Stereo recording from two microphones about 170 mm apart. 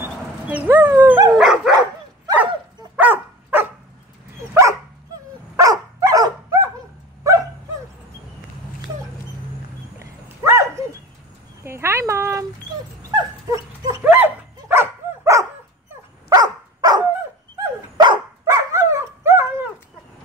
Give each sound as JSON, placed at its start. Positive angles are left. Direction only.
{"t": 0.0, "sound": "dog", "side_deg": -10}
{"t": 1.4, "sound": "dog", "side_deg": -5}
{"t": 1.7, "sound": "dog", "side_deg": -25}
{"t": 3.0, "sound": "dog", "side_deg": -10}
{"t": 5.6, "sound": "dog", "side_deg": -20}
{"t": 9.9, "sound": "horse", "side_deg": -15}
{"t": 11.6, "sound": "a sound", "side_deg": -15}
{"t": 13.1, "sound": "dog", "side_deg": -20}
{"t": 14.0, "sound": "dog", "side_deg": -10}